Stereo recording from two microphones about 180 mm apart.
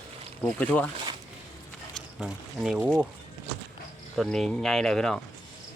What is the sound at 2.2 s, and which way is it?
Speech, 5° right (ahead or behind).